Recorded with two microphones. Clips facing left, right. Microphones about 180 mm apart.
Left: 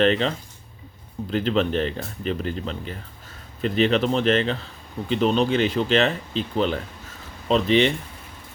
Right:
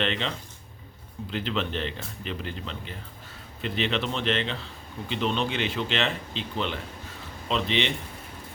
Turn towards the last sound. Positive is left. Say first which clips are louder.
# left 8 dB
turn(degrees=45)  # may be behind; listen again after turning